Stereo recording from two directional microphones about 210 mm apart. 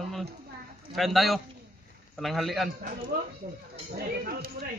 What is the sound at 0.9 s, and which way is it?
Speech, centre (ahead or behind).